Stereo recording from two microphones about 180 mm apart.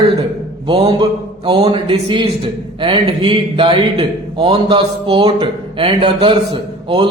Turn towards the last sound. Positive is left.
turn(degrees=-25)  # may be behind; listen again after turning